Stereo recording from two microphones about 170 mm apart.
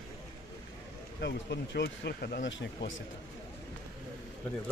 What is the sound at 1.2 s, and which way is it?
Speech, 85° left.